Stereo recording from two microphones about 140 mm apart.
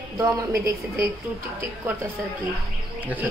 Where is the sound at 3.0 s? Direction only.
10° right (ahead or behind).